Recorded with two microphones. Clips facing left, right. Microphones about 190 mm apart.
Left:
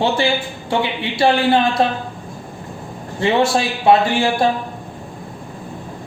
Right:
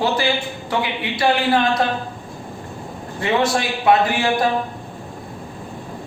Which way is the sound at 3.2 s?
30° left (ahead or behind).